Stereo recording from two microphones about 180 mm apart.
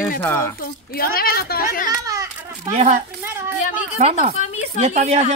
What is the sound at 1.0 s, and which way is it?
A woman's voice, 55° left (ahead or behind).